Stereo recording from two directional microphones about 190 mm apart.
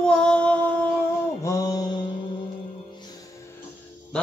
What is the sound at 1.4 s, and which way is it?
Mantra, 20° left (ahead or behind).